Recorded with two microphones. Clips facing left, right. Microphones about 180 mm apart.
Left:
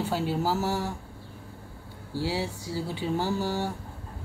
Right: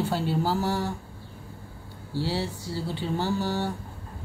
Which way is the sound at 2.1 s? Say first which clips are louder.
Right 1 dB; 10° left (ahead or behind).